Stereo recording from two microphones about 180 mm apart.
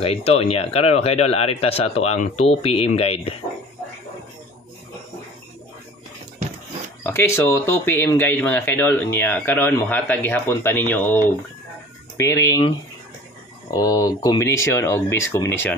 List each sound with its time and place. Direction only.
0.0 s speech: 35° left (ahead or behind)
7.0 s speech: 10° left (ahead or behind)
13.7 s speech: 20° left (ahead or behind)